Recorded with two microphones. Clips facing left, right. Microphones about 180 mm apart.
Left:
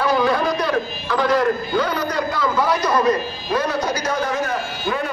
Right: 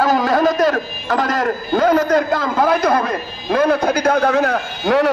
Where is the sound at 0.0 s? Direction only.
45° right (ahead or behind).